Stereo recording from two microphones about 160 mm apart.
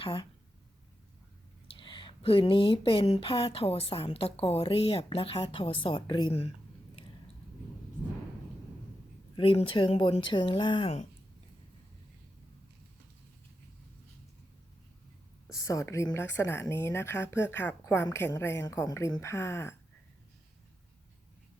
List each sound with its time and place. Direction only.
0.0 s speech: 35° left (ahead or behind)
1.8 s speech: 30° left (ahead or behind)
9.3 s speech: 35° left (ahead or behind)
15.5 s speech: 20° left (ahead or behind)